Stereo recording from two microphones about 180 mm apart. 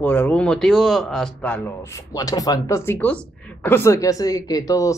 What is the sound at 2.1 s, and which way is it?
Speech, 20° left (ahead or behind).